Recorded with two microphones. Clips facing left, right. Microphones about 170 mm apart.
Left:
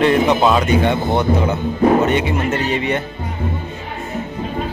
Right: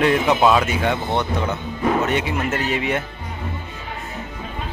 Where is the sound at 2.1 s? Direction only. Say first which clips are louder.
Left 4 dB; centre (ahead or behind).